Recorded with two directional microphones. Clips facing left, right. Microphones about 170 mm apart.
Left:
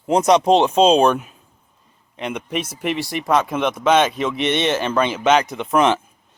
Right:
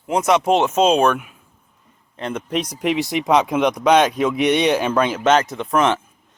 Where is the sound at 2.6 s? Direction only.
15° right (ahead or behind).